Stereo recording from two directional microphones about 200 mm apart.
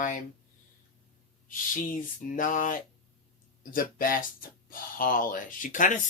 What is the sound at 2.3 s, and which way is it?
Speech, 40° left (ahead or behind).